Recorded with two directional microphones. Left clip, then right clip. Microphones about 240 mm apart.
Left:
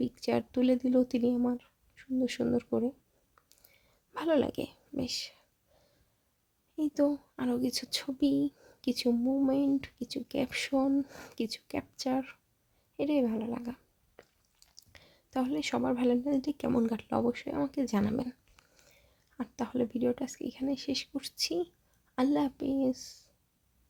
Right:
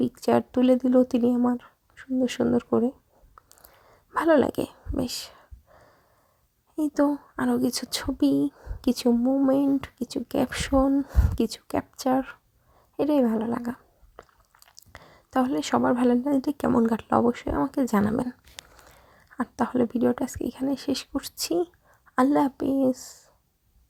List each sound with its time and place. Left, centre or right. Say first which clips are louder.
0.0 s speech: right 9 dB; centre
3.5 s a sound: right 11 dB; right
6.7 s speech: right 5 dB; right
19.4 s speech: right 8 dB; right